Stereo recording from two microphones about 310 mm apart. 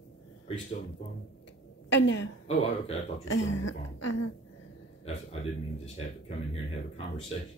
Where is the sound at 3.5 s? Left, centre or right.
Left.